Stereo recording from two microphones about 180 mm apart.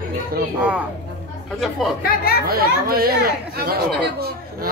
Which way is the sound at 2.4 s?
55° right (ahead or behind).